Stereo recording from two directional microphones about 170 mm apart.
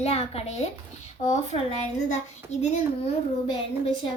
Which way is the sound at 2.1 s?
40° left (ahead or behind).